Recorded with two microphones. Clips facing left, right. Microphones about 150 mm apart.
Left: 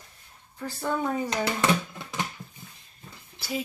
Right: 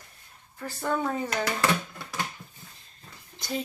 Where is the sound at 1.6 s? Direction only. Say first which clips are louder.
Left 2 dB; 20° left (ahead or behind).